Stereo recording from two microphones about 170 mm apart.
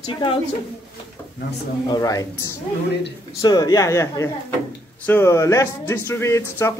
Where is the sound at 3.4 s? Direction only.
25° left (ahead or behind).